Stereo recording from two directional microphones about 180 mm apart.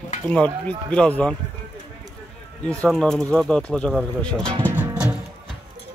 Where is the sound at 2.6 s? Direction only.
5° left (ahead or behind).